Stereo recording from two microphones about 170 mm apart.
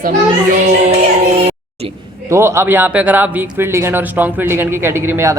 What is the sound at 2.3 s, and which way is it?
A man's voice, 15° right (ahead or behind).